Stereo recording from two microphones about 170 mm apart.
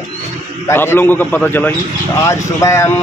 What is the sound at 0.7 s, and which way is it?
A man's voice, 15° left (ahead or behind).